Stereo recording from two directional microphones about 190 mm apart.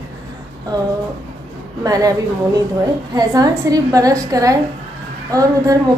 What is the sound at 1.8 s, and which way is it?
Speech, 20° right (ahead or behind).